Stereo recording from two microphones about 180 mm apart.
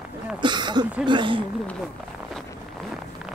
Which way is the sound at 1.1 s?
25° right (ahead or behind).